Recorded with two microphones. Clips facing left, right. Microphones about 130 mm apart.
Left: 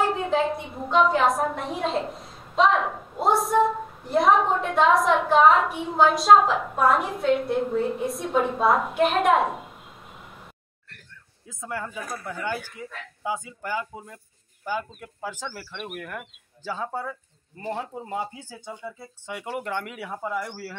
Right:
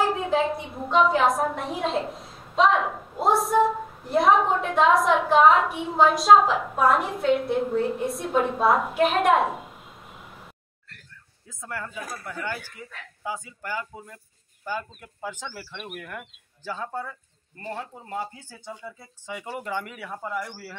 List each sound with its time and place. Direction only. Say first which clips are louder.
0.0 s a woman's voice: even; centre (ahead or behind)
11.4 s speech: left 3 dB; 20° left (ahead or behind)
18.7 s speech: left 1 dB; centre (ahead or behind)